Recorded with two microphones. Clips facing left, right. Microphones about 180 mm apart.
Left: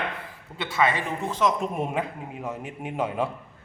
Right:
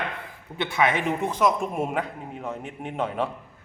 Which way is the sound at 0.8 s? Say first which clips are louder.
Right 1 dB; 20° right (ahead or behind).